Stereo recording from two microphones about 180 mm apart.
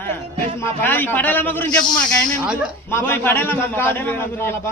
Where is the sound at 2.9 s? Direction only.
15° left (ahead or behind).